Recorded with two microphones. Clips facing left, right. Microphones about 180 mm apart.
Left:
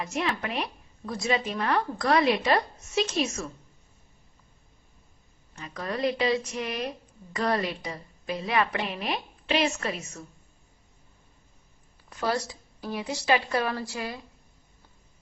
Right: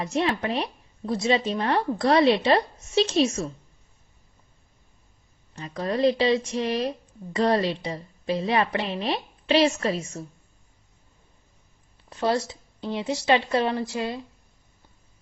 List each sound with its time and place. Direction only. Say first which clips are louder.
0.0 s speech: right 5 dB; 30° right (ahead or behind)
5.6 s speech: right 6 dB; 30° right (ahead or behind)
12.1 s speech: right 4 dB; 25° right (ahead or behind)